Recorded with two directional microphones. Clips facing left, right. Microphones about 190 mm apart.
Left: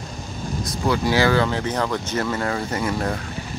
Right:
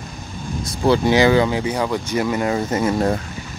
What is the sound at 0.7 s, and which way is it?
Speech, 30° right (ahead or behind).